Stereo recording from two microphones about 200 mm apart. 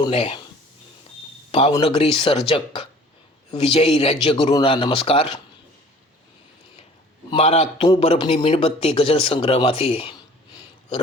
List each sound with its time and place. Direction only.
0.0 s a man's voice: 30° left (ahead or behind)
1.5 s a man's voice: 25° left (ahead or behind)
7.3 s a man's voice: 30° left (ahead or behind)